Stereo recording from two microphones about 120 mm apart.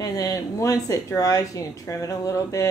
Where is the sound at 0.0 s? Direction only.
25° left (ahead or behind).